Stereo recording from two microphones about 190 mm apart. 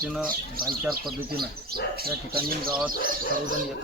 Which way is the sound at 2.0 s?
55° right (ahead or behind).